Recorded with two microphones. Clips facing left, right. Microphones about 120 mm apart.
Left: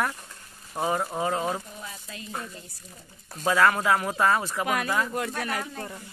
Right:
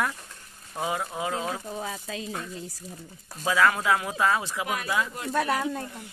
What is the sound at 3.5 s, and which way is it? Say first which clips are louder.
Speech: left 1 dB; centre (ahead or behind).